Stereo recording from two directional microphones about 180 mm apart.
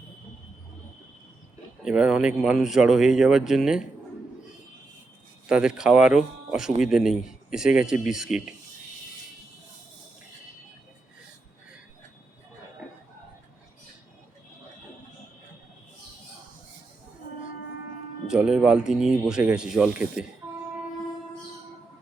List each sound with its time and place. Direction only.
1.8 s speech: 5° right (ahead or behind)
5.5 s speech: 5° right (ahead or behind)
18.3 s speech: 5° right (ahead or behind)